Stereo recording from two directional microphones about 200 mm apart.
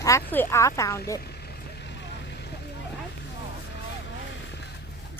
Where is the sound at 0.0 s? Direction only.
10° left (ahead or behind).